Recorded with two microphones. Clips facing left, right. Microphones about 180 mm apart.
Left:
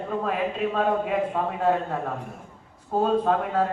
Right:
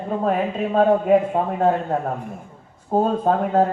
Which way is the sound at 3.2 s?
40° right (ahead or behind).